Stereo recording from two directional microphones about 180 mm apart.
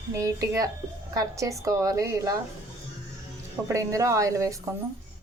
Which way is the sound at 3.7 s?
20° right (ahead or behind).